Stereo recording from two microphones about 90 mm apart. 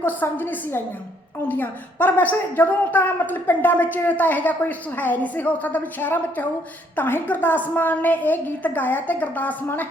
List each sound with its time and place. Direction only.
0.0 s speech: 20° left (ahead or behind)